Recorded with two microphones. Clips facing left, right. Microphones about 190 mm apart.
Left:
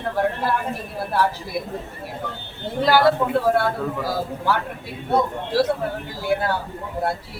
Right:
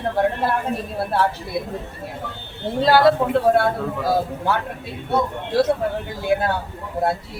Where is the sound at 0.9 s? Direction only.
25° right (ahead or behind).